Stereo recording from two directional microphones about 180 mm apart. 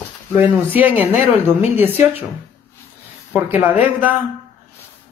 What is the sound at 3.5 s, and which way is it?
Speech, 10° right (ahead or behind).